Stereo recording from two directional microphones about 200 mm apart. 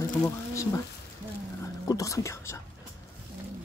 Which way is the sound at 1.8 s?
15° left (ahead or behind).